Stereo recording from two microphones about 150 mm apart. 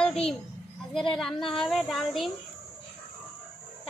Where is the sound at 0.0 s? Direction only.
5° left (ahead or behind).